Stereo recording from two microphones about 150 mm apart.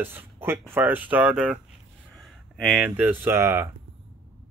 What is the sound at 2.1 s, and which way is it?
Speech, centre (ahead or behind).